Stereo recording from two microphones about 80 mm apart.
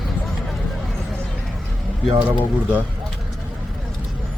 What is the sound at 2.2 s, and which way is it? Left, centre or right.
Speech, right.